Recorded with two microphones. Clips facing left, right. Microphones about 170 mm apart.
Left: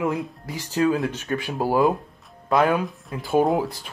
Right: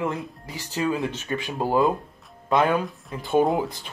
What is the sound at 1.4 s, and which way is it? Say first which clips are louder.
Speech: left 1 dB; 10° left (ahead or behind).